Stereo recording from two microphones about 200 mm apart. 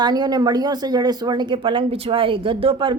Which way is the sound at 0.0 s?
20° right (ahead or behind).